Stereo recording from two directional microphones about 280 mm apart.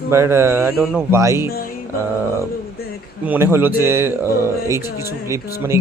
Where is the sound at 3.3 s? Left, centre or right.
Centre.